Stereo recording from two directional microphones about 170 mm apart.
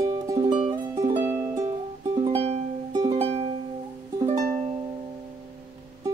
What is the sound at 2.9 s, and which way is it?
Music, 25° right (ahead or behind).